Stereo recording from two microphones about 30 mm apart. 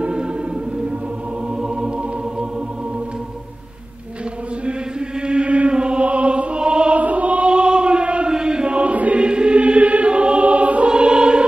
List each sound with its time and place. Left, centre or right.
5.2 s chant: right
6.0 s music: right
7.0 s music: right
7.4 s chant: right
8.3 s chant: right
8.9 s choir: right
9.2 s choir: right
10.4 s choir: right
10.9 s choir: right